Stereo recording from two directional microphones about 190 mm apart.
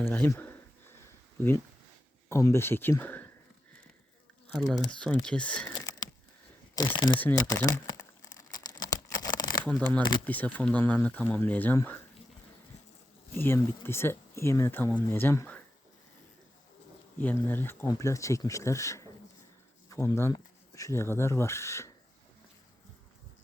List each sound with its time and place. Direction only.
0.0 s a sound: 10° left (ahead or behind)
1.4 s speech: 10° left (ahead or behind)
4.9 s speech: 5° left (ahead or behind)
5.7 s a sound: 20° left (ahead or behind)
6.7 s speech: 25° left (ahead or behind)
8.4 s crumpling: 20° left (ahead or behind)
9.6 s speech: 5° left (ahead or behind)
10.0 s speech: 25° left (ahead or behind)
10.2 s speech: 10° left (ahead or behind)
13.3 s speech: 10° left (ahead or behind)
17.2 s speech: 10° left (ahead or behind)